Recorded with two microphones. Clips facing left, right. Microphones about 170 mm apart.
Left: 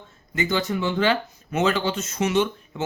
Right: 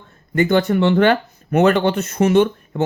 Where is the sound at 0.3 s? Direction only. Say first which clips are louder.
Right 9 dB; 55° right (ahead or behind).